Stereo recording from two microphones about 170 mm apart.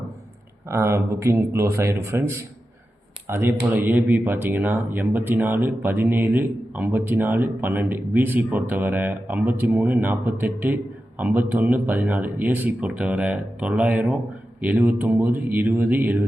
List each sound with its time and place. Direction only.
0.7 s speech: 15° right (ahead or behind)